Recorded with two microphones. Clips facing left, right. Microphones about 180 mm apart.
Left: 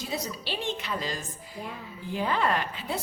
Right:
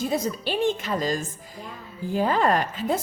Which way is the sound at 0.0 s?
50° right (ahead or behind).